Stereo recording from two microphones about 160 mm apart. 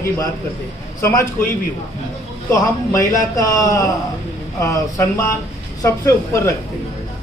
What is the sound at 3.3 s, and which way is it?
A woman's voice, 20° left (ahead or behind).